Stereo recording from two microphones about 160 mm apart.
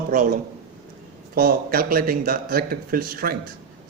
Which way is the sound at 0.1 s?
55° right (ahead or behind).